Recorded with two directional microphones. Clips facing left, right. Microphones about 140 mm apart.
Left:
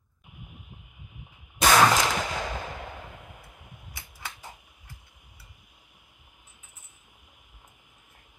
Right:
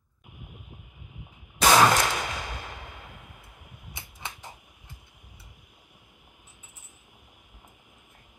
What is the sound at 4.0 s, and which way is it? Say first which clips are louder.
Typewriter: right 3 dB; 25° right (ahead or behind).